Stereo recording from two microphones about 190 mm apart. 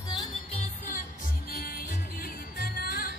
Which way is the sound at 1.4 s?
50° left (ahead or behind).